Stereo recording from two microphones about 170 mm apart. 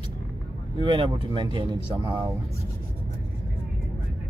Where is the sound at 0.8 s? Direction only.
30° right (ahead or behind).